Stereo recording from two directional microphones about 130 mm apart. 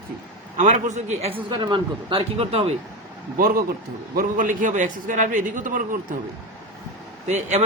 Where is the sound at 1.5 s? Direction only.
35° right (ahead or behind).